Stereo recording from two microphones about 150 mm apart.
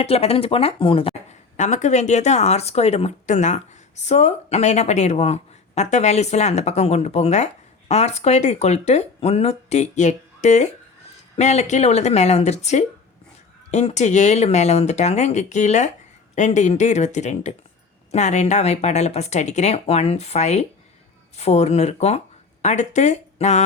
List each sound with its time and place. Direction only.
0.0 s speech: 40° left (ahead or behind)
1.5 s speech: 50° left (ahead or behind)